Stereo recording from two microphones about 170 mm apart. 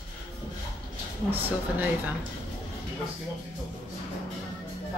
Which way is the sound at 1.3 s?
10° right (ahead or behind).